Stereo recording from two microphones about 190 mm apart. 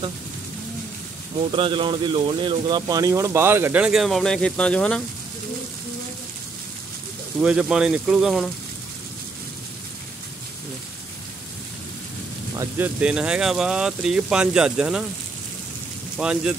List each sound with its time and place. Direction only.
1.4 s speech: 25° right (ahead or behind); by 5.0 s 5° left (ahead or behind)
7.3 s speech: 5° right (ahead or behind)
12.5 s speech: 10° right (ahead or behind)
16.2 s speech: 5° right (ahead or behind)